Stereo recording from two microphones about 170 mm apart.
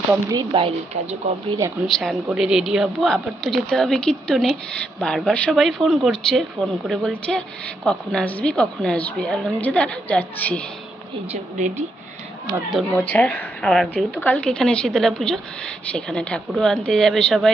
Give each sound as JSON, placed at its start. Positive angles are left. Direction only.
{"t": 0.1, "sound": "speech", "side_deg": -20}
{"t": 1.6, "sound": "speech", "side_deg": -15}
{"t": 2.3, "sound": "speech", "side_deg": -5}
{"t": 11.5, "sound": "speech", "side_deg": -45}
{"t": 12.7, "sound": "speech", "side_deg": 10}